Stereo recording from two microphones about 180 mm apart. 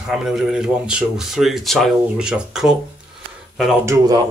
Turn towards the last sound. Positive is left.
turn(degrees=-20)  # may be behind; listen again after turning